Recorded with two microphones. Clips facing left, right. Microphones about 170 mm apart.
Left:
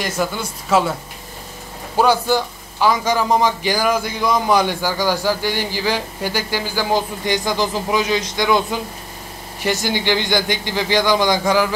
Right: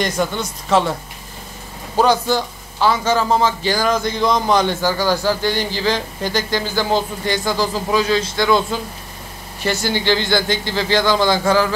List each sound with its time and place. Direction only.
0.0 s speech: 5° left (ahead or behind)
2.0 s a man's voice: 10° left (ahead or behind)